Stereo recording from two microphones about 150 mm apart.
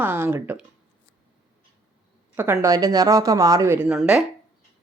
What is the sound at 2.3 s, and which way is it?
Speech, 15° right (ahead or behind).